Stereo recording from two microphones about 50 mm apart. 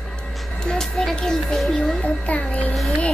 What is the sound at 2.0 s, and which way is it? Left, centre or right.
Speech, left.